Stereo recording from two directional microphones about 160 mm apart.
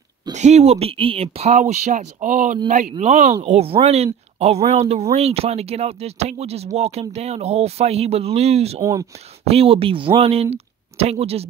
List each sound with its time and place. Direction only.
0.3 s speech: 45° right (ahead or behind)